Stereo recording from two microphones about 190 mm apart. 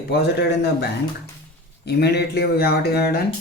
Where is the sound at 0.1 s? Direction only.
60° left (ahead or behind).